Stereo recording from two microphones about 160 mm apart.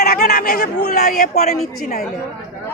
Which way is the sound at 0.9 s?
55° left (ahead or behind).